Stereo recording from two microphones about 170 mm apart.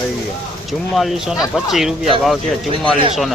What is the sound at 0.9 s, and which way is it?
Speech, centre (ahead or behind).